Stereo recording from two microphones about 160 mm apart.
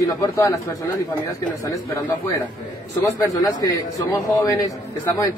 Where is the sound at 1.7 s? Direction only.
20° left (ahead or behind).